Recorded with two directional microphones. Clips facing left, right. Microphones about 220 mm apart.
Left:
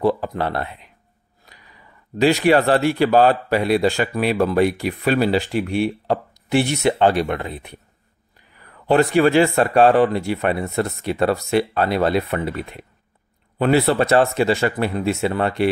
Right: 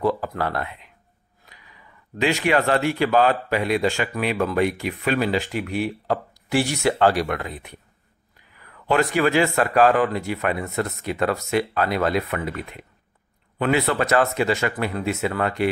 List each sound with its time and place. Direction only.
0.0 s speech: 25° left (ahead or behind)